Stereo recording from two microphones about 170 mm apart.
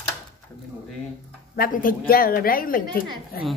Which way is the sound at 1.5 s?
55° left (ahead or behind).